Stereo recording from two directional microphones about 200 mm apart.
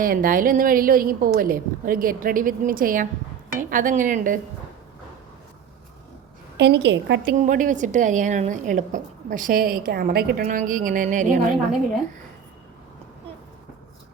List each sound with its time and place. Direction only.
0.0 s a woman's voice: 45° right (ahead or behind)
6.6 s a woman's voice: 60° right (ahead or behind)
7.3 s a woman's voice: 40° right (ahead or behind)